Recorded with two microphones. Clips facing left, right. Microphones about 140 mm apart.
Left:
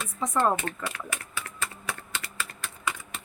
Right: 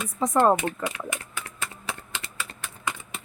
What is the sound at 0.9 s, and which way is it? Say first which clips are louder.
Speech: right 4 dB; 20° right (ahead or behind).